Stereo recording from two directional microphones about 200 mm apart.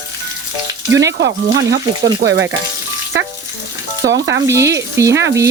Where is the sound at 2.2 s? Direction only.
50° right (ahead or behind).